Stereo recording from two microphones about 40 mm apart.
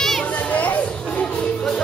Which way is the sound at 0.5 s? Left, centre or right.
Left.